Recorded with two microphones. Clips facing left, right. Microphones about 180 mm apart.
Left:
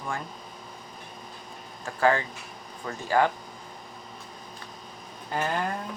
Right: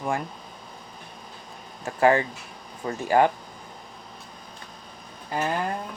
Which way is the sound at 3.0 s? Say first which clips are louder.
Right 3 dB; 15° right (ahead or behind).